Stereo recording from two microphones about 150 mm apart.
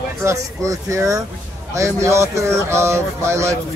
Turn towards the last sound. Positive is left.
turn(degrees=-20)  # may be behind; listen again after turning